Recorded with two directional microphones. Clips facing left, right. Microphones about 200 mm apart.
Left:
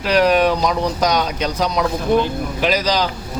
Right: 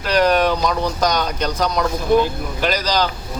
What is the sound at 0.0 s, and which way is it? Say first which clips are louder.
Speech: left 1 dB; 5° left (ahead or behind).